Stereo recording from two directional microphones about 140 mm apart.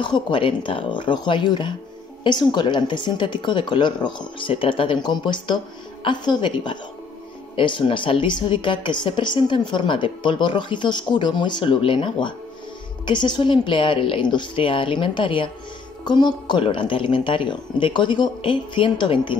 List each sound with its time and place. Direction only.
0.0 s a woman's voice: 35° left (ahead or behind)